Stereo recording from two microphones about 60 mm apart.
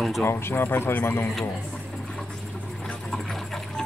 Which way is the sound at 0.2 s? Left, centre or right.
Left.